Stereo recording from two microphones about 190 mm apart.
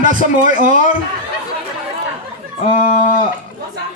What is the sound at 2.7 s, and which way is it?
Speech, 40° left (ahead or behind).